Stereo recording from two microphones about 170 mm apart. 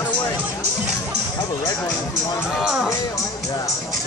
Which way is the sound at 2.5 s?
5° right (ahead or behind).